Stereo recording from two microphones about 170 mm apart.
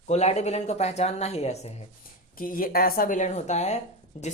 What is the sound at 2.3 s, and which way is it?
Speech, 55° left (ahead or behind).